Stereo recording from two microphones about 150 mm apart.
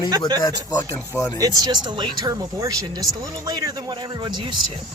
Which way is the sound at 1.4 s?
25° right (ahead or behind).